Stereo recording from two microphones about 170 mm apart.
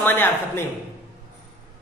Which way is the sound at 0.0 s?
10° left (ahead or behind).